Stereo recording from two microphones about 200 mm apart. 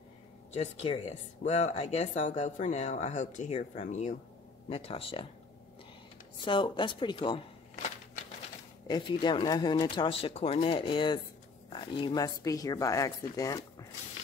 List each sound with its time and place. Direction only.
0.5 s speech: 35° left (ahead or behind)
6.4 s speech: 25° left (ahead or behind)
8.8 s speech: 20° left (ahead or behind)